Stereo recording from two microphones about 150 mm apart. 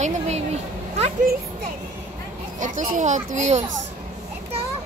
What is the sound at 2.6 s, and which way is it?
Children playing, 60° right (ahead or behind).